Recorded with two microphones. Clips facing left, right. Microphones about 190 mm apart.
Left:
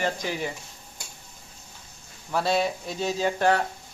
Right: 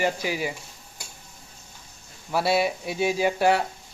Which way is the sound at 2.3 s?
10° right (ahead or behind).